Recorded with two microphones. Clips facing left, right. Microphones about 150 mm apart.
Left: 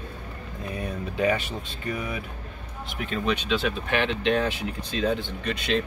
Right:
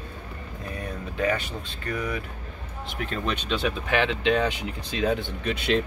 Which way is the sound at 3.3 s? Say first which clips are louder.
Left 2 dB; centre (ahead or behind).